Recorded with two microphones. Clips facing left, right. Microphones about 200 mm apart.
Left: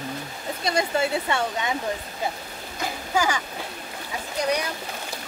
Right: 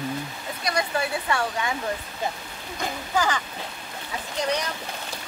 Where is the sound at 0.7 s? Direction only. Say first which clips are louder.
Left 3 dB; 25° left (ahead or behind).